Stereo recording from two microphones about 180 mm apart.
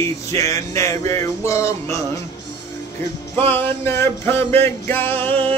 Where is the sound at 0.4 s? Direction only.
15° left (ahead or behind).